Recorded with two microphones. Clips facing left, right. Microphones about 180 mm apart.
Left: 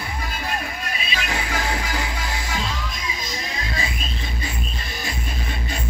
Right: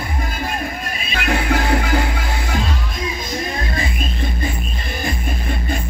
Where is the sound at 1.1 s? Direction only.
60° right (ahead or behind).